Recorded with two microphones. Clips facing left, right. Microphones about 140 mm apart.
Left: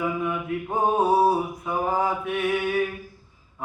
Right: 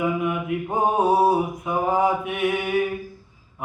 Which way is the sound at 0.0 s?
15° right (ahead or behind).